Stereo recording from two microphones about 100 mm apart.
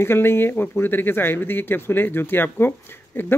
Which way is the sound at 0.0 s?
20° left (ahead or behind).